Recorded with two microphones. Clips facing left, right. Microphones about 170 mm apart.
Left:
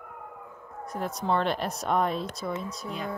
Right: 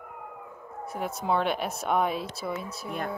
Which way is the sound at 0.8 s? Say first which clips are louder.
Even; 5° right (ahead or behind).